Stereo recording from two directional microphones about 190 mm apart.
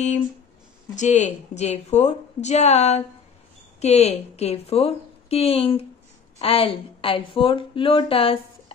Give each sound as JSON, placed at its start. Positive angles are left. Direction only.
{"t": 0.9, "sound": "a woman's voice", "side_deg": 35}